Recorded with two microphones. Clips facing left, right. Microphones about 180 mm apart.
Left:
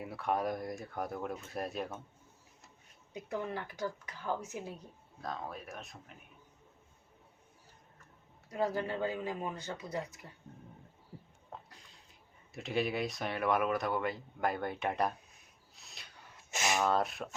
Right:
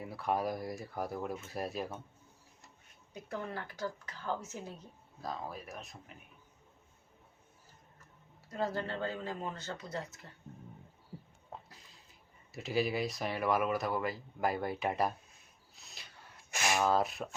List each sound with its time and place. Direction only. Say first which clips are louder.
0.0 s speech: even; centre (ahead or behind)
3.1 s speech: left 3 dB; 20° left (ahead or behind)
5.2 s speech: even; centre (ahead or behind)
8.4 s speech: left 2 dB; 10° left (ahead or behind)
11.7 s a sound: even; centre (ahead or behind)
12.5 s speech: right 1 dB; centre (ahead or behind)
15.7 s a sound: even; centre (ahead or behind)
16.5 s a sound: even; 20° left (ahead or behind)
16.7 s speech: right 1 dB; centre (ahead or behind)